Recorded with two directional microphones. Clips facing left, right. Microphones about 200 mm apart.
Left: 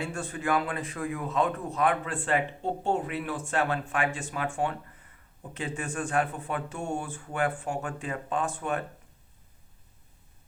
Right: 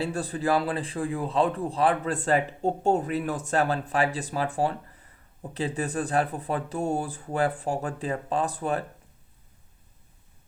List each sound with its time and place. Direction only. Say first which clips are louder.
0.0 s speech: right 5 dB; 35° right (ahead or behind)